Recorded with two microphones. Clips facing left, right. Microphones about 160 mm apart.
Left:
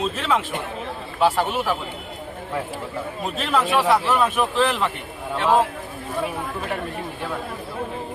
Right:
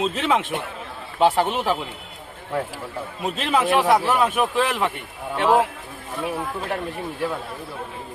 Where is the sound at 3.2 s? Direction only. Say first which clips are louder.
Right 2 dB; 15° right (ahead or behind).